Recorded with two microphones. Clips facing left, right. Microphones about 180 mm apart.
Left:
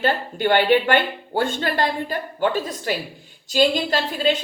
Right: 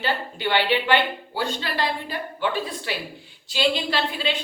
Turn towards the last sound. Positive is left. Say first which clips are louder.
# left 5 dB
turn(degrees=45)  # may be behind; listen again after turning